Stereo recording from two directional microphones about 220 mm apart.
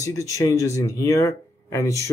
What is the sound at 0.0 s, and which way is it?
Speech, 15° left (ahead or behind).